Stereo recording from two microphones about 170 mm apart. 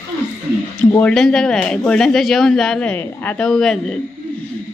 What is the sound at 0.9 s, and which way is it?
Speech, 10° left (ahead or behind).